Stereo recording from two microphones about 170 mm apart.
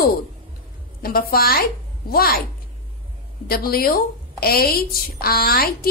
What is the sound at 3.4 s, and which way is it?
A woman's voice, 60° left (ahead or behind).